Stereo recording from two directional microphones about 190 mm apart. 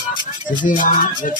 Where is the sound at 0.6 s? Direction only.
45° left (ahead or behind).